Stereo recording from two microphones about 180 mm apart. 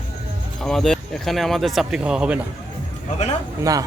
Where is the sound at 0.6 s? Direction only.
Centre (ahead or behind).